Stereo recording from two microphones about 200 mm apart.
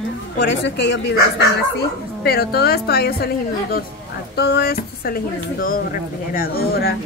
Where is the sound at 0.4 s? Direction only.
60° left (ahead or behind).